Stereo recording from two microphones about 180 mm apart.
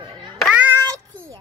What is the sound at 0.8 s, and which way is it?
Child singing, 15° right (ahead or behind).